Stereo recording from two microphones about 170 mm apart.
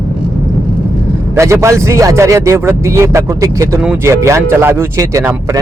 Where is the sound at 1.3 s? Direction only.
15° right (ahead or behind).